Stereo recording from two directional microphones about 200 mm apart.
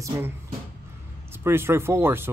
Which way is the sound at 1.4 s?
10° right (ahead or behind).